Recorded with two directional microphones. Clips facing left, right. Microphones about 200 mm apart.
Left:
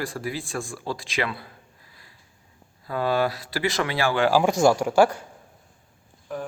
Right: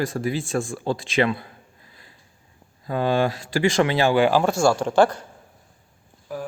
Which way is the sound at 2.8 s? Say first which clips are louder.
Right 2 dB; 20° right (ahead or behind).